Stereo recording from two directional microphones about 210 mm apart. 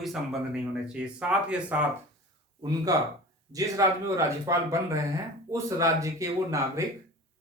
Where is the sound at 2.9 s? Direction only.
15° right (ahead or behind).